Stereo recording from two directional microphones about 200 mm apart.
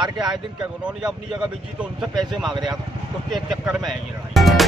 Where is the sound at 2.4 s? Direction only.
20° right (ahead or behind).